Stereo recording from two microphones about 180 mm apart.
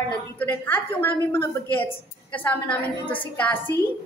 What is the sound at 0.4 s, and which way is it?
Speech, 10° left (ahead or behind).